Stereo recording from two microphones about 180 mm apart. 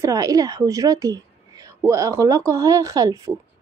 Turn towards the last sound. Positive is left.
turn(degrees=-20)  # may be behind; listen again after turning